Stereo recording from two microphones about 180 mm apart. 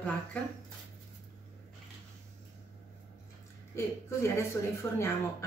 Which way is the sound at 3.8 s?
15° left (ahead or behind).